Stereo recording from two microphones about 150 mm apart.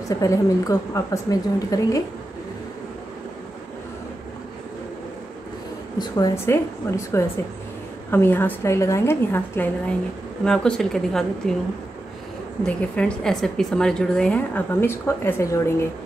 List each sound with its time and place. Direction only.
0.1 s a woman's voice: 20° left (ahead or behind)
5.9 s a woman's voice: 25° left (ahead or behind)
10.4 s a woman's voice: 5° left (ahead or behind)
12.6 s speech: 5° left (ahead or behind)